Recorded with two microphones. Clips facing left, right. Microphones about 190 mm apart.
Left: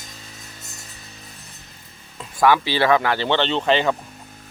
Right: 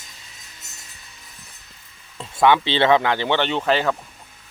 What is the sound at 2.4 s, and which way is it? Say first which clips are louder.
Speech: right 1 dB; 20° right (ahead or behind).